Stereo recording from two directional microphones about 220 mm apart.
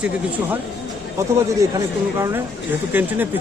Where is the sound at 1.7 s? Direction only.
15° right (ahead or behind).